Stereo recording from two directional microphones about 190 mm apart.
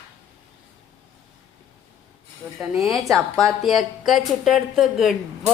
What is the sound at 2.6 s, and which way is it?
Speech, centre (ahead or behind).